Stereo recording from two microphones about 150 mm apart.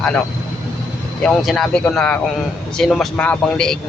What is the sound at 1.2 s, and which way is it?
Speech, centre (ahead or behind).